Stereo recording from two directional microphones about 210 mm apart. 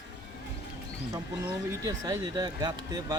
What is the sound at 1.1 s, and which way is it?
Speech, 15° right (ahead or behind).